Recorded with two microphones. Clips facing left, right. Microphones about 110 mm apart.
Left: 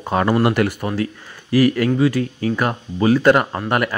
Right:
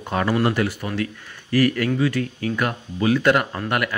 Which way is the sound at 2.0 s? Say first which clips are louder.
Left 4 dB; 30° left (ahead or behind).